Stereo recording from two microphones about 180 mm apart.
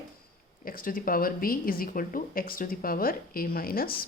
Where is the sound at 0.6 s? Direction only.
50° left (ahead or behind).